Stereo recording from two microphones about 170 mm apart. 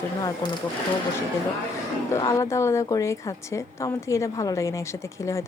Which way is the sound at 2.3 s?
20° left (ahead or behind).